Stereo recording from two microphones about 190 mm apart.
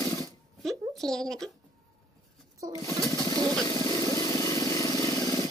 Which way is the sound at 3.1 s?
15° left (ahead or behind).